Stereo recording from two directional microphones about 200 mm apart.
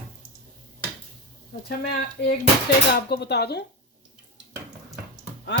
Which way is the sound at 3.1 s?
55° left (ahead or behind).